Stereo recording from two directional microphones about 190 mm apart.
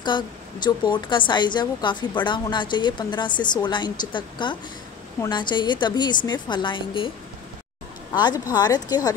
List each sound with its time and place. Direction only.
0.0 s a woman's voice: 25° left (ahead or behind)
8.1 s a woman's voice: 20° left (ahead or behind)